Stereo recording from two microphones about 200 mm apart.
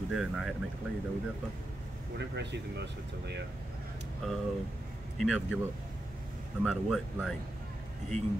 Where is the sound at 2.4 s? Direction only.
60° right (ahead or behind).